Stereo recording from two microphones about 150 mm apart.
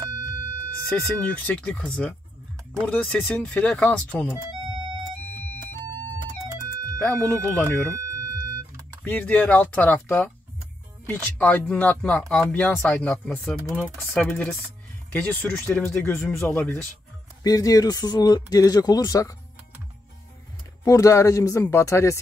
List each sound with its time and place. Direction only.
0.8 s speech: 5° left (ahead or behind)
7.1 s speech: 10° left (ahead or behind)
8.1 s music: 20° right (ahead or behind)
9.0 s speech: 10° left (ahead or behind)
15.1 s speech: 10° left (ahead or behind)
17.4 s speech: 25° left (ahead or behind)
20.8 s speech: 20° left (ahead or behind)